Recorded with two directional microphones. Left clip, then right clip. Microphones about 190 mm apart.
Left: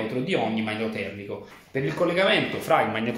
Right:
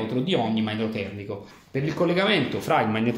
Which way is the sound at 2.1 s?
50° right (ahead or behind).